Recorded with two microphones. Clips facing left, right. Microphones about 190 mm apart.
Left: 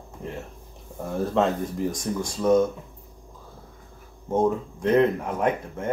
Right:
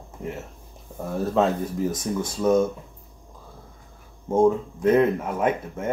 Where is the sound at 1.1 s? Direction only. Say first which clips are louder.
Right 1 dB; centre (ahead or behind).